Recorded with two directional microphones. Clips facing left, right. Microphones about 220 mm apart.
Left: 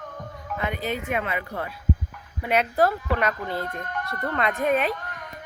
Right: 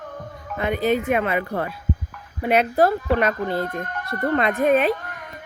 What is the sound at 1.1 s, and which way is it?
Speech, 55° right (ahead or behind).